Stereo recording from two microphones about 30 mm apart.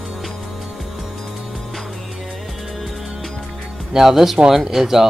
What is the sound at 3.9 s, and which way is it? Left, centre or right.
Speech, centre.